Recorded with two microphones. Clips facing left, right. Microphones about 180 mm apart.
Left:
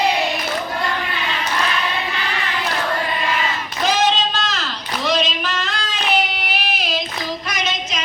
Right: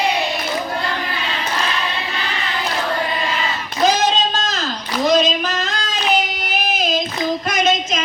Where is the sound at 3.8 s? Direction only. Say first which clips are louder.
Right 2 dB; 40° right (ahead or behind).